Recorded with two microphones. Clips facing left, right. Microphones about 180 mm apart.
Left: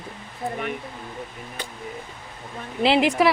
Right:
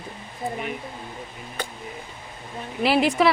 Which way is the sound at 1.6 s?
50° right (ahead or behind).